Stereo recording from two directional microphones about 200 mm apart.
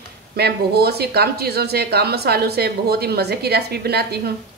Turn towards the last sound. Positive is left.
turn(degrees=-55)  # may be behind; listen again after turning